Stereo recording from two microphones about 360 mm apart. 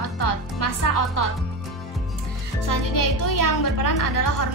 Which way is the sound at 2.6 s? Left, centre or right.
Left.